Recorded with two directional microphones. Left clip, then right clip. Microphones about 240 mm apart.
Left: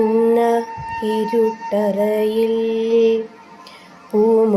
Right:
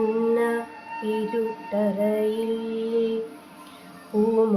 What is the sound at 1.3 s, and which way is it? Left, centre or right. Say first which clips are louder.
Female singing: left 9 dB; left.